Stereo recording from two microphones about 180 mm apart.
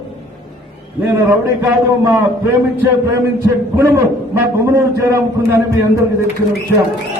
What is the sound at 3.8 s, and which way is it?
A man's voice, 15° right (ahead or behind).